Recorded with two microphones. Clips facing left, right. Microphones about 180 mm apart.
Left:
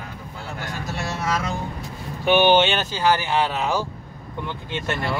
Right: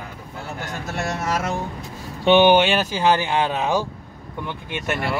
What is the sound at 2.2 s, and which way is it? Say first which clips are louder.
Speech: right 3 dB; 25° right (ahead or behind).